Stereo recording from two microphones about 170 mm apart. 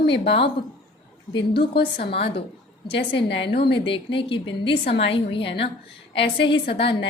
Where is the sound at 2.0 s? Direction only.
35° left (ahead or behind).